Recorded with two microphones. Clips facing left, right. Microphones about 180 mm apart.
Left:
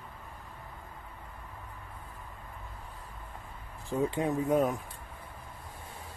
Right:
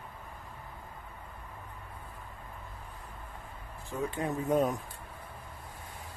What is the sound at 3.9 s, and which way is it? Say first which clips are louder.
Speech: left 5 dB; 30° left (ahead or behind).